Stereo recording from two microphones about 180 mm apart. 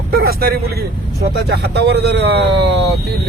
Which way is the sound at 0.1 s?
55° right (ahead or behind).